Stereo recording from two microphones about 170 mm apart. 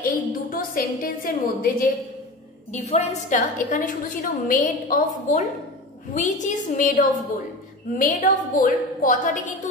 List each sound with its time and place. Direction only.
0.0 s a woman's voice: 55° left (ahead or behind)
2.7 s a woman's voice: 40° left (ahead or behind)